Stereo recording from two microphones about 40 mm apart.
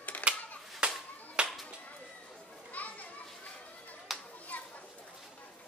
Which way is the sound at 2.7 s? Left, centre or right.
Left.